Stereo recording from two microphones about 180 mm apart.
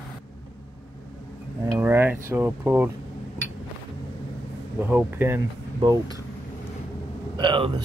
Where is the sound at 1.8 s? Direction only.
10° right (ahead or behind).